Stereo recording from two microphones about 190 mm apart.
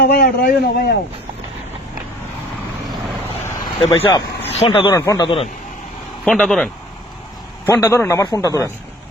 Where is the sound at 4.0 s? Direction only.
20° left (ahead or behind).